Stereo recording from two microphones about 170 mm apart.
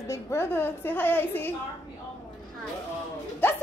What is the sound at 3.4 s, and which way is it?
Speech, 15° left (ahead or behind).